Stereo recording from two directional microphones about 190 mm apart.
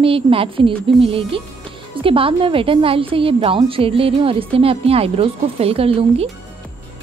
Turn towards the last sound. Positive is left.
turn(degrees=-30)  # may be behind; listen again after turning